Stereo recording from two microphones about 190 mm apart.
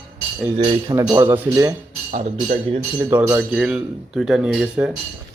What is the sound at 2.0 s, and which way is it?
Speech, 40° right (ahead or behind).